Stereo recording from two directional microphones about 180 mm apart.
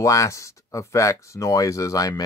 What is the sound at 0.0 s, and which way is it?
Speech, 15° left (ahead or behind).